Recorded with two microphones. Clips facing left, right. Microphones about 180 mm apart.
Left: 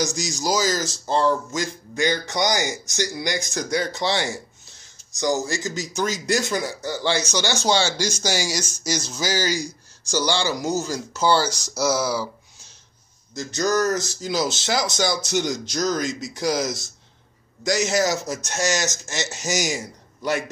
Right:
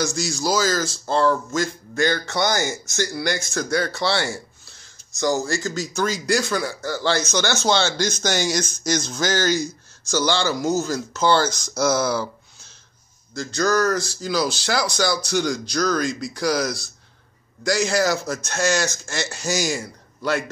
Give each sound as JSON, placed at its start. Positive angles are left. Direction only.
{"t": 0.0, "sound": "a man's voice", "side_deg": 15}
{"t": 13.3, "sound": "a man's voice", "side_deg": 20}